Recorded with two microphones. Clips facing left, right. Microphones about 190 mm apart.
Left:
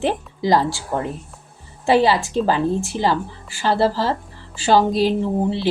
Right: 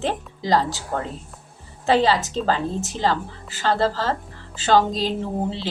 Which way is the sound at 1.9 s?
10° left (ahead or behind).